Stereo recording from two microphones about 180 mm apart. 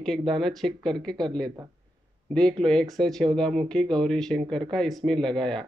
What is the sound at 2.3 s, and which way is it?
Speech, 5° left (ahead or behind).